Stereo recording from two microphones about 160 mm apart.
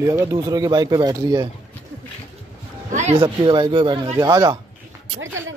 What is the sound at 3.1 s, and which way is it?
Speech, 30° right (ahead or behind).